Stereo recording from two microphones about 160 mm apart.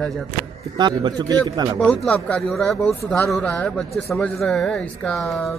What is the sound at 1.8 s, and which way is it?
Speech, 5° left (ahead or behind).